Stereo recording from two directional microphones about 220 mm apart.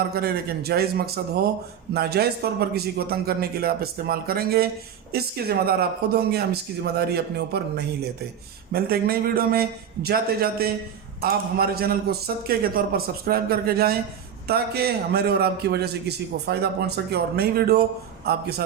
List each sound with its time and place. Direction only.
0.1 s a man's voice: 45° right (ahead or behind)